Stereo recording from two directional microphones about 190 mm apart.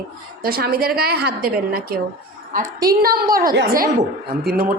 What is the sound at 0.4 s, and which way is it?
A woman's voice, 55° right (ahead or behind).